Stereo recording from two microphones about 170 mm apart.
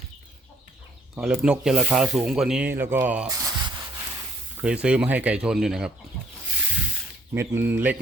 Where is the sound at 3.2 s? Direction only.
20° right (ahead or behind).